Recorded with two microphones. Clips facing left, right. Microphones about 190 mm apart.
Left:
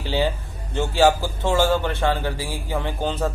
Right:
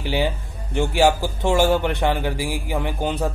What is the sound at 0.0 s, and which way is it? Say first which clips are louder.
Music: even; 15° right (ahead or behind).